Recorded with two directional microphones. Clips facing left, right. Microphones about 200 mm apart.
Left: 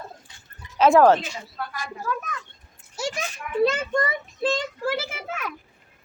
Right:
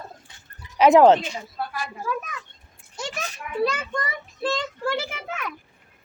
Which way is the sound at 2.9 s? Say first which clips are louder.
Left 3 dB; 10° left (ahead or behind).